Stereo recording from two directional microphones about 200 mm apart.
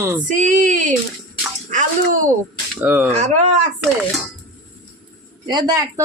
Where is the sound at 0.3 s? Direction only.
40° right (ahead or behind).